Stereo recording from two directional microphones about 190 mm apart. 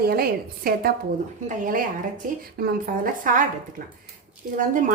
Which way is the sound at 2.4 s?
50° right (ahead or behind).